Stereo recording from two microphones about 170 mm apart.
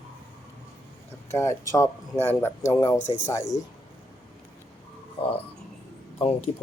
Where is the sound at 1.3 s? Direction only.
15° left (ahead or behind).